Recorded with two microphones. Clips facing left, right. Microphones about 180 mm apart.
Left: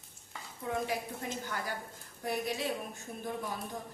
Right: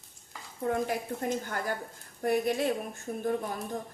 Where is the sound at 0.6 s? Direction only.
50° right (ahead or behind).